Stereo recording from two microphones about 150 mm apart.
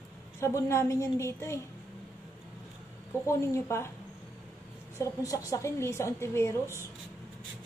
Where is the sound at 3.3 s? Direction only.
20° left (ahead or behind).